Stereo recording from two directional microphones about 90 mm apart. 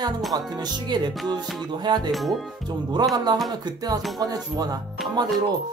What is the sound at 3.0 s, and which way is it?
Speech, 50° right (ahead or behind).